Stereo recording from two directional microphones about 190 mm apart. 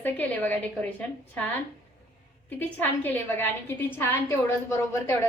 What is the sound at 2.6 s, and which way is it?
A woman's voice, 10° left (ahead or behind).